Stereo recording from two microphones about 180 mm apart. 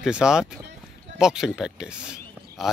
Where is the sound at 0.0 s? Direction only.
5° right (ahead or behind).